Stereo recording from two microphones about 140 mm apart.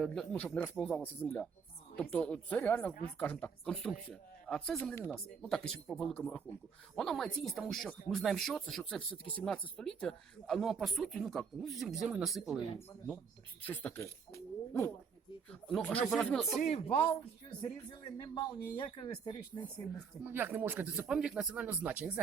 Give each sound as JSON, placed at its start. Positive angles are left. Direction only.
{"t": 0.0, "sound": "a man's voice", "side_deg": 5}
{"t": 4.8, "sound": "a man's voice", "side_deg": 15}
{"t": 13.6, "sound": "a man's voice", "side_deg": 10}
{"t": 15.6, "sound": "a man's voice", "side_deg": 5}
{"t": 16.6, "sound": "speech", "side_deg": 45}
{"t": 18.2, "sound": "speech", "side_deg": 30}
{"t": 20.2, "sound": "speech", "side_deg": -15}